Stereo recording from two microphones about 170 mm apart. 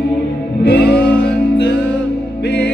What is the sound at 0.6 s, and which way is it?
Music, 75° left (ahead or behind).